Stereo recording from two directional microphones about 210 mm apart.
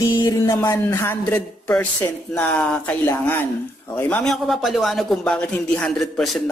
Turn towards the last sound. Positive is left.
turn(degrees=0)  # may be behind; listen again after turning